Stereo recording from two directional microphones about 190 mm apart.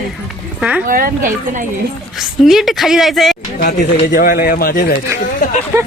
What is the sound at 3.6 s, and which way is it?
A woman's voice, 50° left (ahead or behind).